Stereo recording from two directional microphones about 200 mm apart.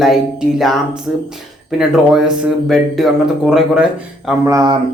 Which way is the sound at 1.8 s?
5° right (ahead or behind).